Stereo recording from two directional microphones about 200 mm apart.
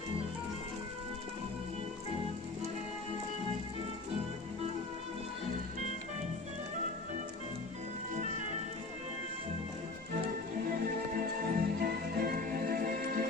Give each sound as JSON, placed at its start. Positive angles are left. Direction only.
{"t": 10.7, "sound": "music", "side_deg": -45}